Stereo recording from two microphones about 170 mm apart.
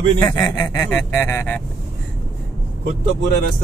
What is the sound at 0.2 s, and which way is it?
Speech, 20° left (ahead or behind).